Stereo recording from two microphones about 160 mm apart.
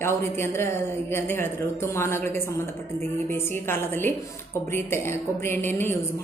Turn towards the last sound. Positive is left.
turn(degrees=15)  # may be behind; listen again after turning